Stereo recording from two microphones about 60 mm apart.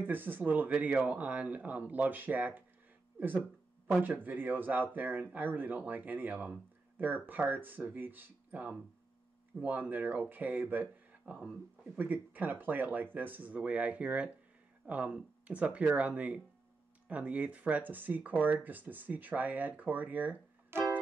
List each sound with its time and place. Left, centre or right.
0.0 s speech: right
3.8 s speech: right
20.7 s music: right